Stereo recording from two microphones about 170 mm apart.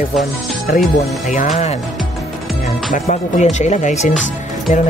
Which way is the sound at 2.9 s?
45° left (ahead or behind).